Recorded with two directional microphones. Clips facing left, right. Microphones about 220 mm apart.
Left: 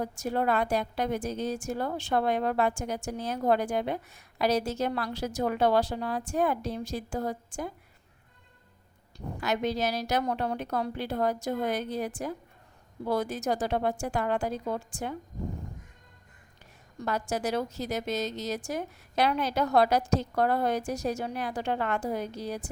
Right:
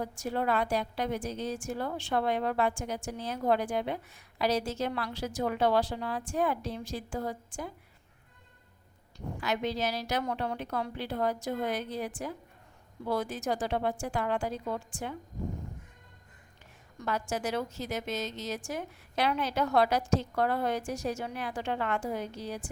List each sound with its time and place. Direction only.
0.0 s a woman's voice: 45° left (ahead or behind)
9.1 s a woman's voice: 40° left (ahead or behind)
17.0 s a woman's voice: 40° left (ahead or behind)